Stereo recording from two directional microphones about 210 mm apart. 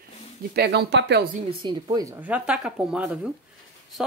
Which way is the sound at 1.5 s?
20° right (ahead or behind).